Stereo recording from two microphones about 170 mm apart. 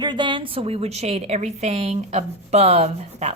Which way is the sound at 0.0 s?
25° right (ahead or behind).